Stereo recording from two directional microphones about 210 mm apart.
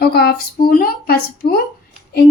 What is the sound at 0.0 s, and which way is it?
A woman's voice, 50° left (ahead or behind).